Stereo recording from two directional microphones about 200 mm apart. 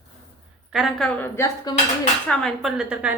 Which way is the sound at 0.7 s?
Centre (ahead or behind).